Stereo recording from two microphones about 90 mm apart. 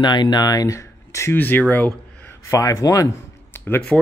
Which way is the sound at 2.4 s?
35° left (ahead or behind).